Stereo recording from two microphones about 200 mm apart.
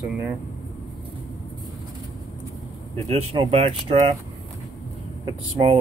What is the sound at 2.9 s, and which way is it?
Speech, 30° right (ahead or behind).